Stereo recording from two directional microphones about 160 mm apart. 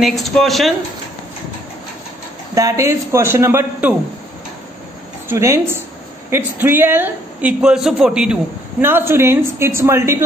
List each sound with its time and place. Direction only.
0.0 s speech: centre (ahead or behind)
2.5 s a man's voice: 20° right (ahead or behind)
5.3 s a man's voice: 15° right (ahead or behind)